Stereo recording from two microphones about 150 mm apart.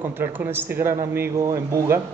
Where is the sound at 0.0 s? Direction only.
15° right (ahead or behind).